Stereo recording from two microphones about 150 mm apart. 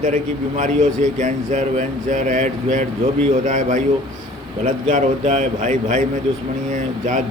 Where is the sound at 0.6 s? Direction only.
55° right (ahead or behind).